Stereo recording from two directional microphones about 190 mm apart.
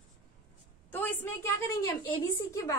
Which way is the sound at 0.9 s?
10° left (ahead or behind).